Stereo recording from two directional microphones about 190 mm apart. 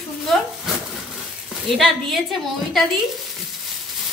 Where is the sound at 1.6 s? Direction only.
Centre (ahead or behind).